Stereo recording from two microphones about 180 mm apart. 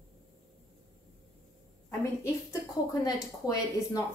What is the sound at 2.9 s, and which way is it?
A woman's voice, 20° left (ahead or behind).